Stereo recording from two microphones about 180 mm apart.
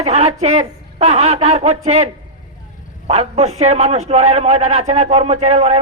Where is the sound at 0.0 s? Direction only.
35° right (ahead or behind).